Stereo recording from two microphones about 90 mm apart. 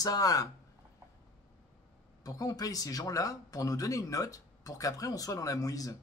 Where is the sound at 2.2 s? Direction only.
45° left (ahead or behind).